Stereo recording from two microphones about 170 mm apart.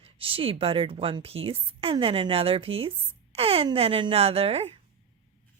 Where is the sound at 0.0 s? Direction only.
35° right (ahead or behind).